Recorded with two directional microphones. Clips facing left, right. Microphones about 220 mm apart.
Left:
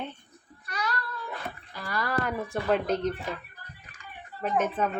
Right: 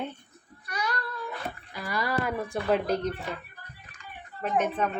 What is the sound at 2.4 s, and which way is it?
Speech, centre (ahead or behind).